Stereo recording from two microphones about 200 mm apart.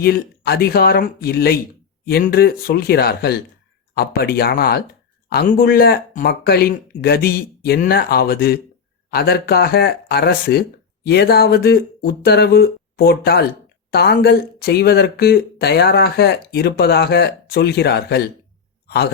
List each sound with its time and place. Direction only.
0.0 s speech: 50° left (ahead or behind)